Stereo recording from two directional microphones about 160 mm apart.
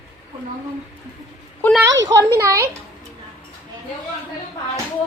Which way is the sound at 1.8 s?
20° right (ahead or behind).